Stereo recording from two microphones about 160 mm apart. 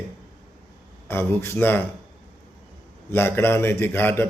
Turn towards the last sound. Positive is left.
turn(degrees=15)  # may be behind; listen again after turning